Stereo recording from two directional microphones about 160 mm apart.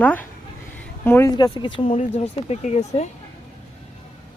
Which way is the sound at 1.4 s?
25° left (ahead or behind).